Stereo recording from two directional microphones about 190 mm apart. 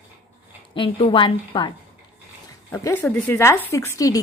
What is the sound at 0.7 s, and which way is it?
Speech, 25° left (ahead or behind).